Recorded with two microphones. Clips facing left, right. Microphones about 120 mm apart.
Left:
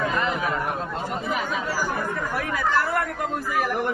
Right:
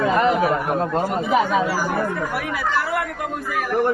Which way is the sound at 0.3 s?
45° right (ahead or behind).